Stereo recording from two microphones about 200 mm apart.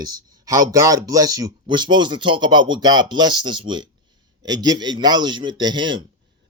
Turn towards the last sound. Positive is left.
turn(degrees=-25)  # may be behind; listen again after turning